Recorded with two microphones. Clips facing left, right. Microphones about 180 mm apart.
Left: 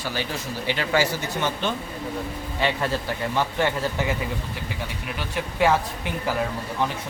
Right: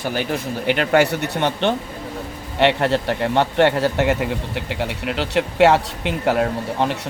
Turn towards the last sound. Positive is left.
turn(degrees=-70)  # may be behind; listen again after turning